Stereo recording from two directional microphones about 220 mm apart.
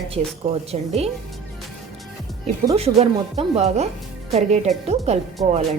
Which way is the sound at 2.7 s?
30° right (ahead or behind).